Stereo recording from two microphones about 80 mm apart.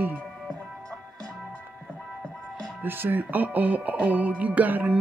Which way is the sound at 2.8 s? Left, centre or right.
Right.